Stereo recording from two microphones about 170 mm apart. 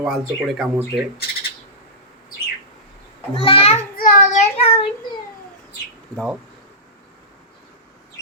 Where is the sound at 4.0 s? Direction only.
50° left (ahead or behind); by 4.8 s 35° left (ahead or behind).